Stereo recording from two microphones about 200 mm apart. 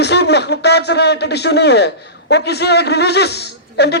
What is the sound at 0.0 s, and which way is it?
A man's voice, 55° left (ahead or behind).